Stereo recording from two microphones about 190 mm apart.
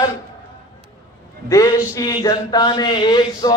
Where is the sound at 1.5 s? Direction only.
15° left (ahead or behind).